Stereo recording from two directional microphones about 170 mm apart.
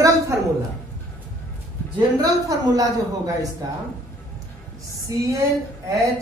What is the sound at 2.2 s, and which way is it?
A woman's voice, 20° right (ahead or behind).